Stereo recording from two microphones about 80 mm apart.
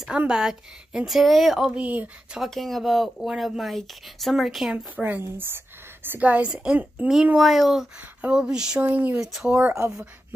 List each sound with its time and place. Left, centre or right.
0.3 s speech: centre
1.8 s speech: centre
2.4 s speech: centre
4.9 s a woman's voice: centre
5.2 s a woman's voice: right
6.0 s a woman's voice: centre
7.3 s speech: centre
8.0 s speech: centre
8.4 s speech: centre
8.8 s a woman's voice: right
9.2 s speech: centre
9.8 s speech: right